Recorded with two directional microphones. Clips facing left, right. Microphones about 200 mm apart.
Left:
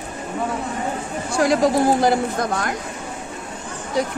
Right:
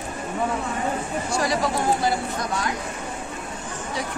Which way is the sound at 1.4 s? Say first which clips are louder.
Left 9 dB; 45° left (ahead or behind).